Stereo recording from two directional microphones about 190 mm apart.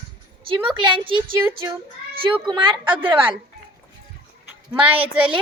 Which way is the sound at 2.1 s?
30° right (ahead or behind).